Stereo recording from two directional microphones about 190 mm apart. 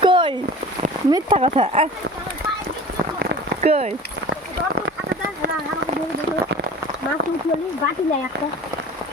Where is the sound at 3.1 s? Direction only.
35° right (ahead or behind).